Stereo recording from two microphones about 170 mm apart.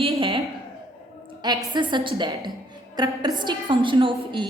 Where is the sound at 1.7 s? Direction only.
30° right (ahead or behind).